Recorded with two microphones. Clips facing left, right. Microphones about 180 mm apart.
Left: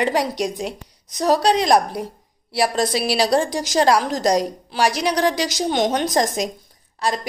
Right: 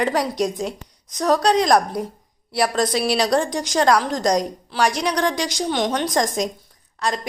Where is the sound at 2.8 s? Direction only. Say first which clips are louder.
Even; 5° left (ahead or behind).